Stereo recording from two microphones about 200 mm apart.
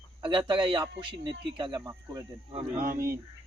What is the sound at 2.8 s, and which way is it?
Speech, 45° right (ahead or behind).